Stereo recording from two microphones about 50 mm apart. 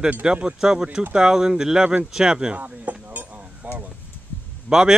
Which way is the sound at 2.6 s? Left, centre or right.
Right.